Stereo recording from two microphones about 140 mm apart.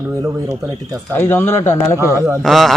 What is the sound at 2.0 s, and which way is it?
Speech, 20° right (ahead or behind).